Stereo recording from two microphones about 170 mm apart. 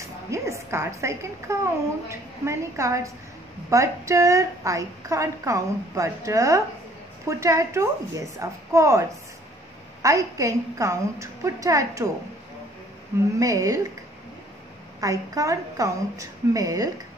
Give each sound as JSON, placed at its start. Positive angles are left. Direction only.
{"t": 0.0, "sound": "a woman's voice", "side_deg": -15}
{"t": 10.0, "sound": "a woman's voice", "side_deg": -20}
{"t": 13.4, "sound": "a woman's voice", "side_deg": -20}
{"t": 15.0, "sound": "a woman's voice", "side_deg": -20}